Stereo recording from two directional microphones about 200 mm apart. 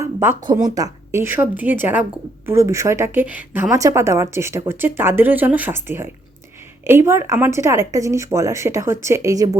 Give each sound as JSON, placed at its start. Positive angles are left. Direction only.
{"t": 0.0, "sound": "a woman's voice", "side_deg": -15}